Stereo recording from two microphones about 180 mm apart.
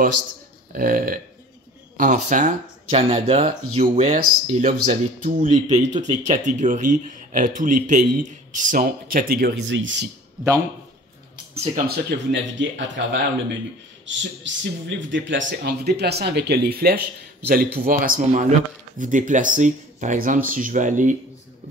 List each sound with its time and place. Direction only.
0.7 s speech: 50° right (ahead or behind)
9.7 s speech: 90° right
11.5 s speech: 35° right (ahead or behind)
11.9 s speech: 70° right (ahead or behind); by 21.2 s 45° right (ahead or behind)